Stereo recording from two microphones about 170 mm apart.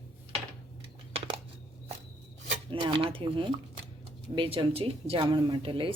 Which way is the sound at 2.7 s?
30° right (ahead or behind).